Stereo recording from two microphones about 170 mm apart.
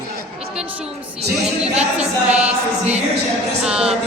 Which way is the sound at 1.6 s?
40° right (ahead or behind).